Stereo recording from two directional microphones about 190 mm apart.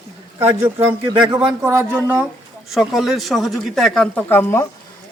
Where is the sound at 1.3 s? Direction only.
20° right (ahead or behind); by 4.7 s 10° left (ahead or behind).